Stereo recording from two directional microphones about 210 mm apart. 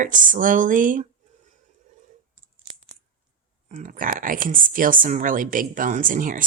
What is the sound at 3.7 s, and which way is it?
A woman's voice, 40° right (ahead or behind).